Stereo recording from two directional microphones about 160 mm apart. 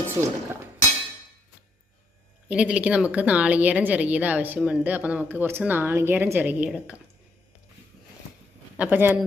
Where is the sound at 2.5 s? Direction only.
5° right (ahead or behind).